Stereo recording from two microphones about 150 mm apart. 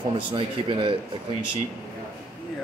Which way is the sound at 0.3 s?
35° right (ahead or behind).